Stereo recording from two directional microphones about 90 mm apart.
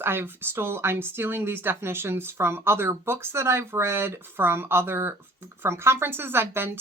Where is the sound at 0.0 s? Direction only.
25° right (ahead or behind).